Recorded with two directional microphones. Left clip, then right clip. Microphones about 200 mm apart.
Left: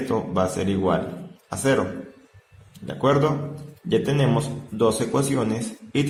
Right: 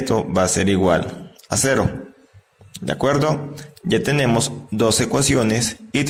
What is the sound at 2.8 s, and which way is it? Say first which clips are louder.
A man's voice: right 2 dB; 40° right (ahead or behind).